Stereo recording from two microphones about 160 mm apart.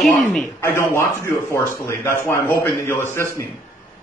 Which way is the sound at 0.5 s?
15° left (ahead or behind).